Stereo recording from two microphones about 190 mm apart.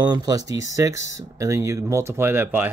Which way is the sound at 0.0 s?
20° right (ahead or behind).